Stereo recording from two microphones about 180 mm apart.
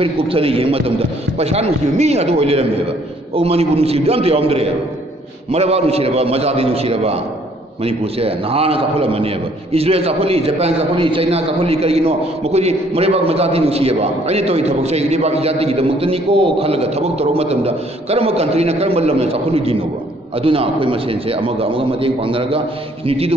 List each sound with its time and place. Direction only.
0.0 s a man's voice: 30° right (ahead or behind)